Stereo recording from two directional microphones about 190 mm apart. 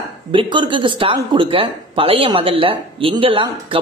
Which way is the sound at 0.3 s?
25° right (ahead or behind).